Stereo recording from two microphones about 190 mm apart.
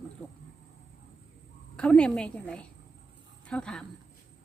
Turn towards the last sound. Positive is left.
turn(degrees=5)  # may be behind; listen again after turning